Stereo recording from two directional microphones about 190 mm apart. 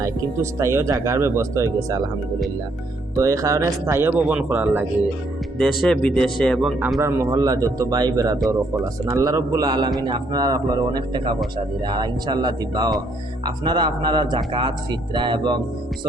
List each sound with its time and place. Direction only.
0.6 s speech: 15° right (ahead or behind)
3.2 s speech: 15° right (ahead or behind)
5.8 s speech: 5° left (ahead or behind); by 15.5 s 25° right (ahead or behind)